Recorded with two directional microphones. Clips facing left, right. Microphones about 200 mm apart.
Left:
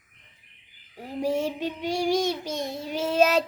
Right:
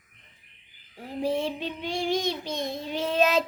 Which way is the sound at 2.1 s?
40° left (ahead or behind).